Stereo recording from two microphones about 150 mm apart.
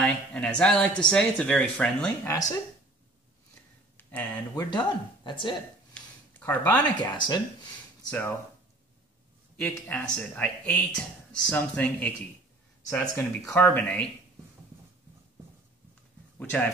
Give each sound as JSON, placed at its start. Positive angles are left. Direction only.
{"t": 0.0, "sound": "speech", "side_deg": 10}
{"t": 2.2, "sound": "speech", "side_deg": 25}
{"t": 3.9, "sound": "speech", "side_deg": 10}
{"t": 4.6, "sound": "speech", "side_deg": 30}
{"t": 6.4, "sound": "speech", "side_deg": 15}
{"t": 7.0, "sound": "speech", "side_deg": 30}
{"t": 8.1, "sound": "speech", "side_deg": 15}
{"t": 9.6, "sound": "speech", "side_deg": 10}